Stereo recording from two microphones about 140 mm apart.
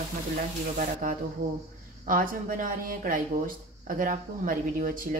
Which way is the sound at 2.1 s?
75° right (ahead or behind).